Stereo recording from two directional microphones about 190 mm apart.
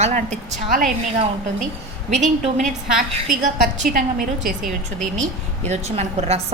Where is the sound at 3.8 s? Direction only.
45° right (ahead or behind).